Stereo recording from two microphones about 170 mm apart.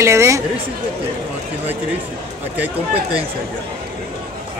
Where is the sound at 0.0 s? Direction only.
15° right (ahead or behind).